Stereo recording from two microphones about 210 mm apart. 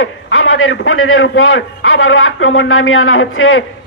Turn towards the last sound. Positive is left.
turn(degrees=75)  # may be behind; listen again after turning